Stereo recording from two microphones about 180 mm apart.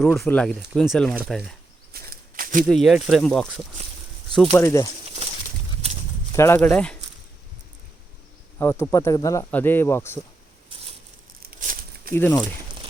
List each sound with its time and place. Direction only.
0.3 s speech: 5° left (ahead or behind)
1.9 s a sound: 50° right (ahead or behind)
2.6 s speech: centre (ahead or behind)
4.5 s speech: 15° left (ahead or behind)
5.8 s clip-clop: 35° right (ahead or behind)
6.3 s speech: 15° left (ahead or behind)
8.5 s speech: 15° left (ahead or behind)
11.6 s a sound: 50° right (ahead or behind)
12.1 s speech: 10° left (ahead or behind)